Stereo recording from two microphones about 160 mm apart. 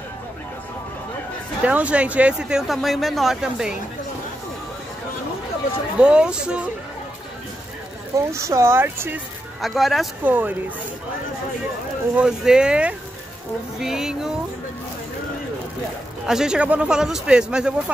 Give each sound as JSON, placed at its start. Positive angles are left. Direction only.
{"t": 1.6, "sound": "speech", "side_deg": -10}
{"t": 5.9, "sound": "speech", "side_deg": -5}
{"t": 8.2, "sound": "speech", "side_deg": -20}
{"t": 9.6, "sound": "speech", "side_deg": 0}
{"t": 10.2, "sound": "speech", "side_deg": -10}
{"t": 12.2, "sound": "speech", "side_deg": -5}
{"t": 16.3, "sound": "speech", "side_deg": -5}